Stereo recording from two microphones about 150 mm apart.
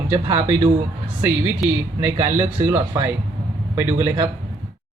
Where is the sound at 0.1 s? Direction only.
15° right (ahead or behind).